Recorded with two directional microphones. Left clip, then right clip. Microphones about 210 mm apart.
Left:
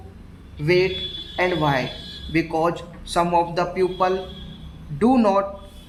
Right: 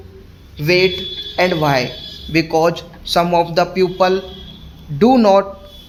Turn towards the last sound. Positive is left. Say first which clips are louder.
# right 7 dB
turn(degrees=-35)  # may be behind; listen again after turning